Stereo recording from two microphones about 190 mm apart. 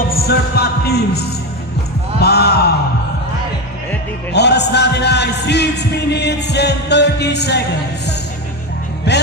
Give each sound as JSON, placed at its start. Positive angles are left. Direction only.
{"t": 0.1, "sound": "music", "side_deg": 55}
{"t": 2.1, "sound": "a sound", "side_deg": 55}
{"t": 4.3, "sound": "speech", "side_deg": 60}
{"t": 9.1, "sound": "music", "side_deg": 60}